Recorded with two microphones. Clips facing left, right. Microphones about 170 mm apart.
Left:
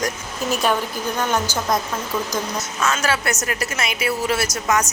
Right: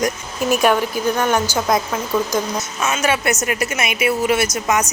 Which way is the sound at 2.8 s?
20° right (ahead or behind).